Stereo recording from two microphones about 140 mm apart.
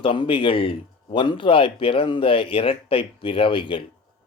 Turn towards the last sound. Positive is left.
turn(degrees=35)  # may be behind; listen again after turning